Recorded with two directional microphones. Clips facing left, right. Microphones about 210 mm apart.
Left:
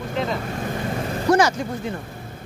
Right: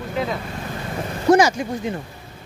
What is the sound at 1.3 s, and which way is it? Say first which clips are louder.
Speech: right 3 dB; 25° right (ahead or behind).